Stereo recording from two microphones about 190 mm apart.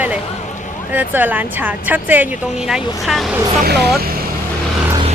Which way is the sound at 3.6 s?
60° right (ahead or behind).